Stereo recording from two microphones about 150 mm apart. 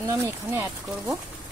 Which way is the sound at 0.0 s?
20° right (ahead or behind).